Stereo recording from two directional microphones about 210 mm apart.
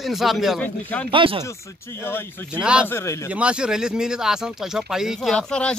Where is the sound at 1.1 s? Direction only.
25° right (ahead or behind).